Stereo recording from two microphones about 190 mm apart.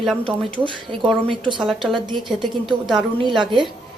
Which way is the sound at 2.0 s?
25° right (ahead or behind).